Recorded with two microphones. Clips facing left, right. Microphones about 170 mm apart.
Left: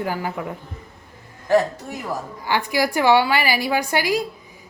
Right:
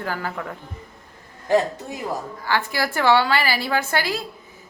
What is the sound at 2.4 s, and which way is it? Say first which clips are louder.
A woman's voice: left 3 dB; 15° left (ahead or behind).